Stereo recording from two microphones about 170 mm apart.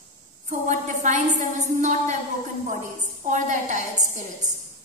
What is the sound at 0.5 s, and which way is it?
A woman's voice, 45° right (ahead or behind).